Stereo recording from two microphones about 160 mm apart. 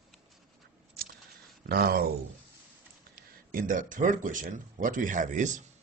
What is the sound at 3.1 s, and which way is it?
Speech, 60° right (ahead or behind).